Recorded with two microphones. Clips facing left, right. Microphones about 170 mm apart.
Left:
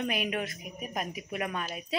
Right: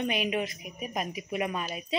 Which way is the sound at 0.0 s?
Centre (ahead or behind).